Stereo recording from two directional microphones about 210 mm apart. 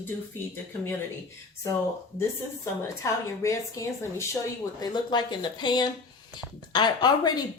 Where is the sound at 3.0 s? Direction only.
15° left (ahead or behind).